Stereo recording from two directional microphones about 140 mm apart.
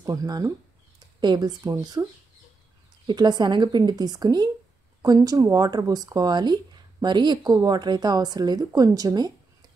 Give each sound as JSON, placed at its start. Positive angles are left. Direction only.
{"t": 0.0, "sound": "speech", "side_deg": -25}
{"t": 3.1, "sound": "speech", "side_deg": -30}